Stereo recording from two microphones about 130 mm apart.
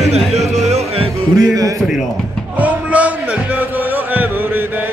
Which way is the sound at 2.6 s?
10° right (ahead or behind).